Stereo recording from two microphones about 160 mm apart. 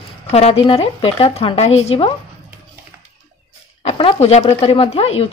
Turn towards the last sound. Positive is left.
turn(degrees=40)  # may be behind; listen again after turning